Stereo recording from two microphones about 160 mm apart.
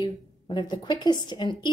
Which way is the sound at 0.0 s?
25° left (ahead or behind).